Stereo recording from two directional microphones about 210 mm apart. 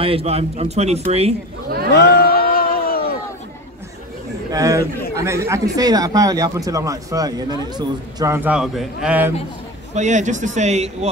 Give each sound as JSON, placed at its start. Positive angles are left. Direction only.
{"t": 0.0, "sound": "a man's voice", "side_deg": -30}
{"t": 1.9, "sound": "a sound", "side_deg": 50}
{"t": 4.5, "sound": "a man's voice", "side_deg": -15}
{"t": 9.9, "sound": "a man's voice", "side_deg": -35}